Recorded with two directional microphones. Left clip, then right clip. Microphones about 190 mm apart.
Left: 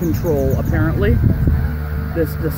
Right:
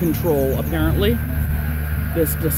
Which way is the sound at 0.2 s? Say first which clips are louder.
Left 1 dB; 15° right (ahead or behind).